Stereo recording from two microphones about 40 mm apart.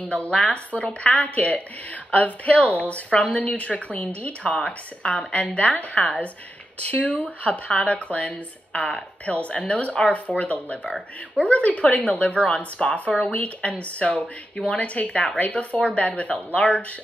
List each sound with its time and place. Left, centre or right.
0.0 s speech: left